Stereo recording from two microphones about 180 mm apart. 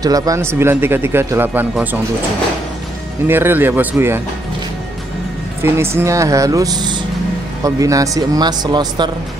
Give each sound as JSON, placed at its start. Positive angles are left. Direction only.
{"t": 0.0, "sound": "speech", "side_deg": -20}
{"t": 3.3, "sound": "speech", "side_deg": -10}
{"t": 5.6, "sound": "speech", "side_deg": -15}